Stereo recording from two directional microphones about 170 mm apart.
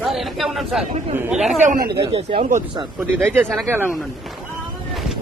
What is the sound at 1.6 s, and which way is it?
Speech, 55° right (ahead or behind).